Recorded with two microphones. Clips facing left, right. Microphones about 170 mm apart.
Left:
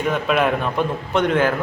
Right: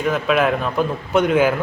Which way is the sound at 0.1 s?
Centre (ahead or behind).